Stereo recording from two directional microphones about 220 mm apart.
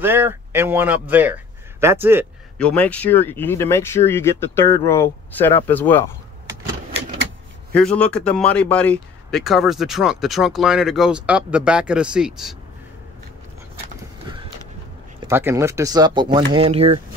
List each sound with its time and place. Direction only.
0.0 s speech: 10° right (ahead or behind)
2.6 s speech: 5° left (ahead or behind)
7.7 s a man's voice: 5° left (ahead or behind)
14.3 s a sound: 20° right (ahead or behind)
15.2 s speech: 10° right (ahead or behind); by 17.0 s 25° right (ahead or behind)